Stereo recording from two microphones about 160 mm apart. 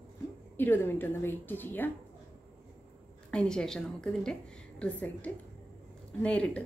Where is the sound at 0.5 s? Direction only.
15° left (ahead or behind).